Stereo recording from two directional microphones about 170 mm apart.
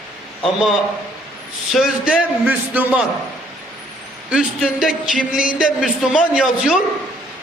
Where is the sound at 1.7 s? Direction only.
5° right (ahead or behind).